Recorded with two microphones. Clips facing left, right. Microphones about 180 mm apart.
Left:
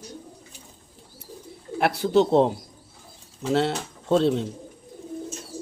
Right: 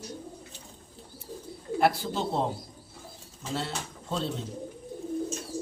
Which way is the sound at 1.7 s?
70° left (ahead or behind).